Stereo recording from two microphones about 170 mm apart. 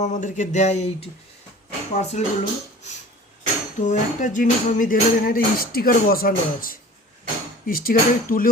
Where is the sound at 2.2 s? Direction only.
45° left (ahead or behind).